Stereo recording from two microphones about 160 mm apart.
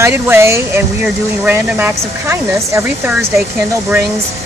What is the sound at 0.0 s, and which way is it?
Speech, 15° right (ahead or behind).